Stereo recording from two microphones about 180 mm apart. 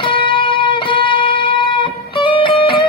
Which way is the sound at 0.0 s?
30° left (ahead or behind).